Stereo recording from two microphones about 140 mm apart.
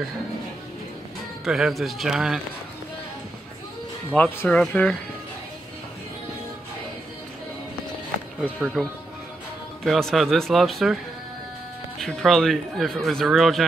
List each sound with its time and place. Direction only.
1.4 s a man's voice: centre (ahead or behind)
4.1 s speech: 10° left (ahead or behind)
8.5 s a man's voice: centre (ahead or behind)
9.8 s a man's voice: centre (ahead or behind)
12.0 s a man's voice: 5° left (ahead or behind)